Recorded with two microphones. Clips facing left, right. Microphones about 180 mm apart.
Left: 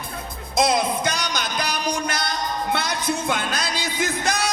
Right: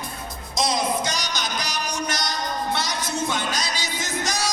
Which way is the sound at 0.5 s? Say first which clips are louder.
Left 3 dB; 55° left (ahead or behind).